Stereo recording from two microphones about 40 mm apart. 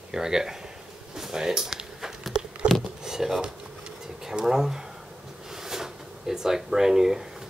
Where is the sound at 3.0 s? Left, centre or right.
Centre.